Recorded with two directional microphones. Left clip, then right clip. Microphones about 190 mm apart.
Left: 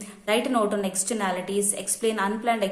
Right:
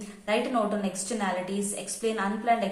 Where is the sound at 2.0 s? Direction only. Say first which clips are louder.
Left 2 dB; 35° left (ahead or behind).